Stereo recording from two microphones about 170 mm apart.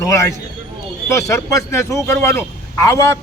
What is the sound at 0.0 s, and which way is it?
A man's voice, 20° left (ahead or behind).